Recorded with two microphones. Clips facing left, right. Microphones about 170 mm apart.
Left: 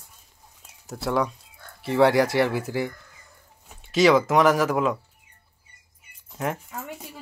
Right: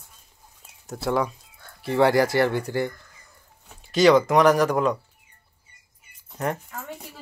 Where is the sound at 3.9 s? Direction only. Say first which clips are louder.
Right 1 dB; centre (ahead or behind).